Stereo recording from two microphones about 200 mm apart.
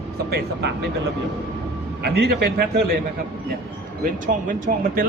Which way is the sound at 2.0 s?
55° right (ahead or behind).